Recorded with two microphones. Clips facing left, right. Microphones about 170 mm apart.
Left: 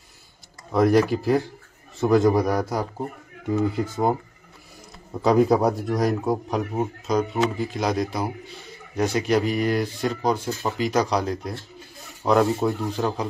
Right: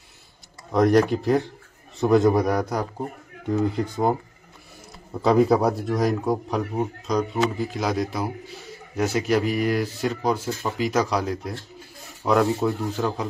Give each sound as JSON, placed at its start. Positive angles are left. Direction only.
{"t": 0.7, "sound": "a man's voice", "side_deg": 5}
{"t": 6.6, "sound": "a man's voice", "side_deg": 20}
{"t": 7.1, "sound": "a man's voice", "side_deg": 0}